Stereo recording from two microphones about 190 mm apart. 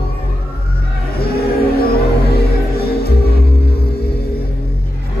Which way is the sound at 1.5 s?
55° left (ahead or behind).